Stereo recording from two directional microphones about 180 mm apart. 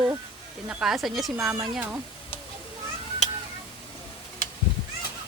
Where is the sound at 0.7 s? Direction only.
5° right (ahead or behind).